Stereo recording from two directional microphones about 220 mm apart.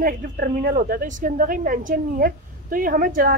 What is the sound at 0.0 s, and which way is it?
Speech, 40° right (ahead or behind).